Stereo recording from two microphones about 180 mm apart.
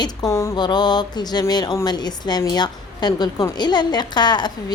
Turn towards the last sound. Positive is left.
turn(degrees=25)  # may be behind; listen again after turning